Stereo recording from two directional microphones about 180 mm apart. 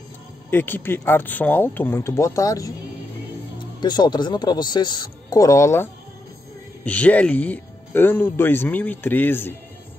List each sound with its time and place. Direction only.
0.5 s speech: 10° left (ahead or behind)
3.8 s a man's voice: 25° left (ahead or behind)